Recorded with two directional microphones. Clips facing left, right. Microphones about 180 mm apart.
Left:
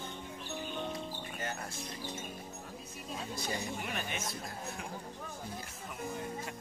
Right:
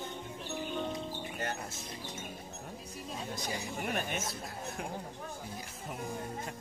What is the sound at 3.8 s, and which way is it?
Speech, 50° right (ahead or behind).